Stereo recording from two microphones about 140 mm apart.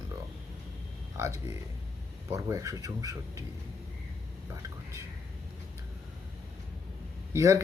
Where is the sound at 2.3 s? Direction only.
20° right (ahead or behind).